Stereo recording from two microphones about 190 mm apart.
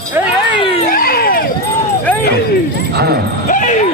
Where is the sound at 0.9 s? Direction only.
50° left (ahead or behind).